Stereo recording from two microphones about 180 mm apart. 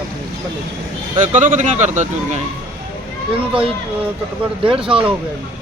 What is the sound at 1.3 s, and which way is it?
Speech, 45° right (ahead or behind).